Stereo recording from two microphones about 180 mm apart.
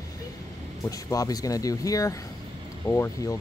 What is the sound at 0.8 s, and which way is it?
Speech, 20° left (ahead or behind).